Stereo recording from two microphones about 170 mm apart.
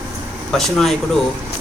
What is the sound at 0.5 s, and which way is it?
Speech, centre (ahead or behind).